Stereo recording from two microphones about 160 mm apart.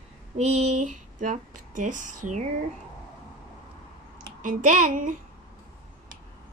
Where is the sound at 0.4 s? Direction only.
40° right (ahead or behind).